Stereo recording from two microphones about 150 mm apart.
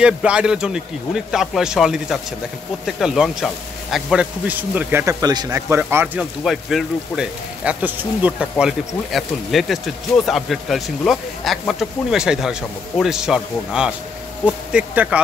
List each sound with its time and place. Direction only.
0.0 s a man's voice: 5° right (ahead or behind)
5.2 s speech: 25° right (ahead or behind)
6.4 s a man's voice: centre (ahead or behind)